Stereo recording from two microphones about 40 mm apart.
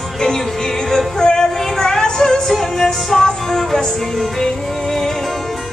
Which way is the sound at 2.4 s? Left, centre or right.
Centre.